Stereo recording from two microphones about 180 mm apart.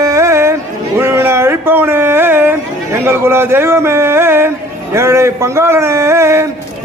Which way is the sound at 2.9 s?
15° right (ahead or behind).